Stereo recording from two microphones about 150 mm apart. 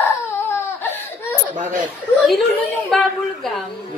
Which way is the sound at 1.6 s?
60° right (ahead or behind).